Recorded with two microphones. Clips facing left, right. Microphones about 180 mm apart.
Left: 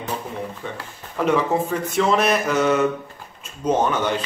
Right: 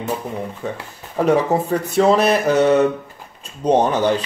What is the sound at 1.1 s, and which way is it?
Speech, 40° right (ahead or behind).